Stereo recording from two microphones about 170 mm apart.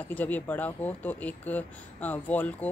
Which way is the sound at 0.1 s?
10° left (ahead or behind).